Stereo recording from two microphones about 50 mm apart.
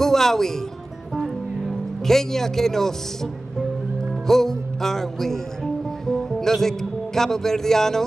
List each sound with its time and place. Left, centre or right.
0.0 s speech: centre
1.2 s music: centre
4.3 s speech: centre